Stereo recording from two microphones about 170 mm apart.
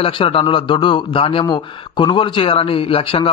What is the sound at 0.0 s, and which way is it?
A man's voice, 30° left (ahead or behind).